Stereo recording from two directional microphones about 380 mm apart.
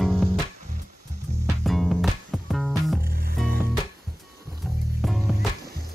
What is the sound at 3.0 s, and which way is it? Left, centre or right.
Music, right.